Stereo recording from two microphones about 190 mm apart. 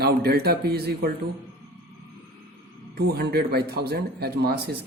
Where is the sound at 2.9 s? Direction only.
55° right (ahead or behind).